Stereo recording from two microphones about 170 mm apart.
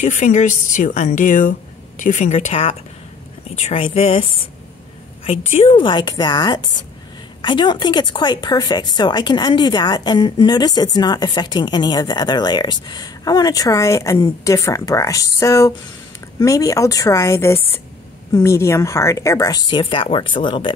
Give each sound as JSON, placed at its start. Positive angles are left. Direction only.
{"t": 0.0, "sound": "a woman's voice", "side_deg": 45}